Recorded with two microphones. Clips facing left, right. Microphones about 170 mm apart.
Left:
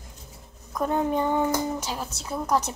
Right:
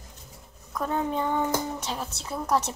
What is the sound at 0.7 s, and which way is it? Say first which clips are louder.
Speech: left 3 dB; 20° left (ahead or behind).